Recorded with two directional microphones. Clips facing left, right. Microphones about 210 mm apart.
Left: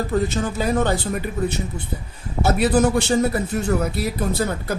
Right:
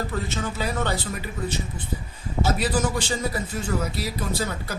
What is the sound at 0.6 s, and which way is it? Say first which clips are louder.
Speech: left 7 dB; 50° left (ahead or behind).